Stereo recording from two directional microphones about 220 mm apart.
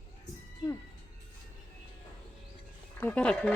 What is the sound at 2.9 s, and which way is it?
Speech, 5° left (ahead or behind).